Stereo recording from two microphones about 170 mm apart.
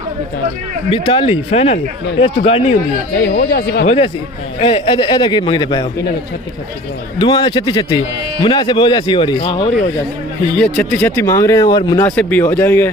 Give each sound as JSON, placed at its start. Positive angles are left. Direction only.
{"t": 0.8, "sound": "speech", "side_deg": 30}
{"t": 3.2, "sound": "speech", "side_deg": 85}
{"t": 3.8, "sound": "speech", "side_deg": 40}
{"t": 7.2, "sound": "speech", "side_deg": 25}
{"t": 10.5, "sound": "speech", "side_deg": 5}
{"t": 12.0, "sound": "speech", "side_deg": 10}